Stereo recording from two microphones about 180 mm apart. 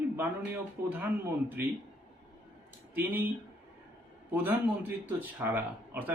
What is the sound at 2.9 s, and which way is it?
Speech, 10° right (ahead or behind).